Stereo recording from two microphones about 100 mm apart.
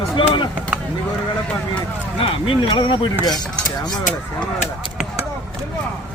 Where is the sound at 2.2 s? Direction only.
65° left (ahead or behind).